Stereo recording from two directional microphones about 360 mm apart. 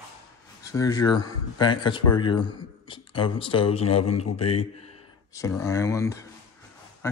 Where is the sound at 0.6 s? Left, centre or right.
Centre.